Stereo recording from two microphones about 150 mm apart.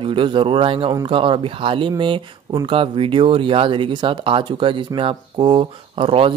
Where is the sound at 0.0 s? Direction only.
35° right (ahead or behind).